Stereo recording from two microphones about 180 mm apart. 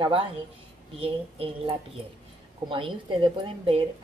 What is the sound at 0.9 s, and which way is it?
A woman's voice, 30° right (ahead or behind).